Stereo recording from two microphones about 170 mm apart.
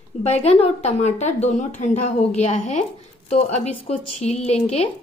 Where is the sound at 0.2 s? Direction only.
40° left (ahead or behind).